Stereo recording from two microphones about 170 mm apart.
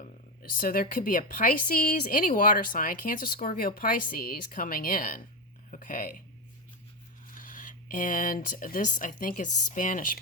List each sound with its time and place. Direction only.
0.5 s a woman's voice: 55° left (ahead or behind)
7.3 s speech: 55° left (ahead or behind)